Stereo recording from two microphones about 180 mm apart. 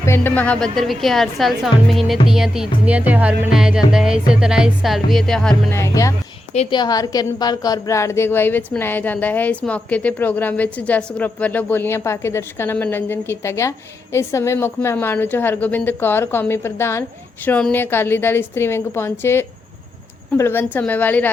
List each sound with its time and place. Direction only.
0.0 s a woman's voice: 15° left (ahead or behind)
5.7 s a woman's voice: 15° left (ahead or behind)